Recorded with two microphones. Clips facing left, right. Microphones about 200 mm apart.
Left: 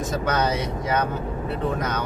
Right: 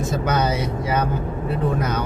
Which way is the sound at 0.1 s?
5° right (ahead or behind).